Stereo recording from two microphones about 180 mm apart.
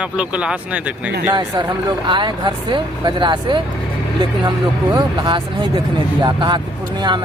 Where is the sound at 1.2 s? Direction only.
20° right (ahead or behind).